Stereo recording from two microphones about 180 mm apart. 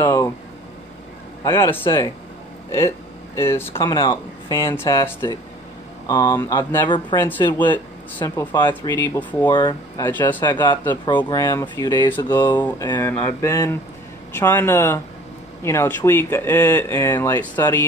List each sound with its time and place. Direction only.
0.0 s a sound: 20° left (ahead or behind)
1.4 s speech: 15° left (ahead or behind)
3.3 s speech: 15° left (ahead or behind)
3.7 s speech: 25° left (ahead or behind)
8.2 s speech: 25° left (ahead or behind)
9.1 s speech: 10° left (ahead or behind)
9.5 s speech: 25° left (ahead or behind)
12.5 s speech: 10° left (ahead or behind)
12.8 s speech: 20° left (ahead or behind)